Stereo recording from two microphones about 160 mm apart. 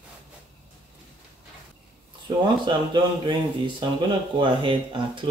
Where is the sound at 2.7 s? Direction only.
30° right (ahead or behind).